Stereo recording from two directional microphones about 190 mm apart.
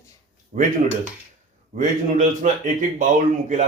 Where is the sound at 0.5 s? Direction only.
40° right (ahead or behind).